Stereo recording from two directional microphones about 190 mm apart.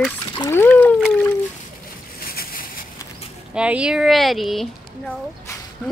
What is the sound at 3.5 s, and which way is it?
Speech, 5° right (ahead or behind).